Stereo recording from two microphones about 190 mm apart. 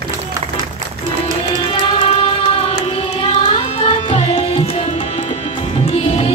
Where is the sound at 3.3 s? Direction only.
25° left (ahead or behind).